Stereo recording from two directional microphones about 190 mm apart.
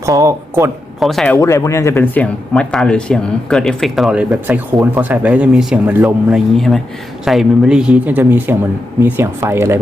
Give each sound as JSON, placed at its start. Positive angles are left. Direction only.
{"t": 0.0, "sound": "speech", "side_deg": -15}
{"t": 0.9, "sound": "speech", "side_deg": 0}
{"t": 1.4, "sound": "speech", "side_deg": 15}
{"t": 6.5, "sound": "speech", "side_deg": 0}